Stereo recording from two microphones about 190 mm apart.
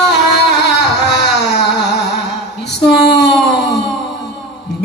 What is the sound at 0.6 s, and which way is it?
Music, 65° left (ahead or behind).